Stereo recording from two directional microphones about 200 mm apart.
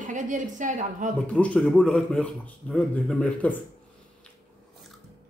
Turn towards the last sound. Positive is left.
turn(degrees=5)  # may be behind; listen again after turning